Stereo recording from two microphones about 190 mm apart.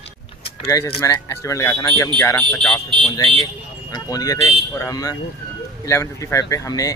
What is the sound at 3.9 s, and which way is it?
Speech, 20° left (ahead or behind).